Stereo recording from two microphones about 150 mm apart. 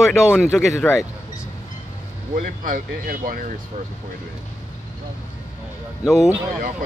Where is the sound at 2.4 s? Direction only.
60° right (ahead or behind).